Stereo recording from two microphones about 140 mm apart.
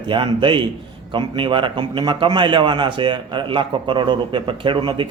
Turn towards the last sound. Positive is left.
turn(degrees=-35)  # may be behind; listen again after turning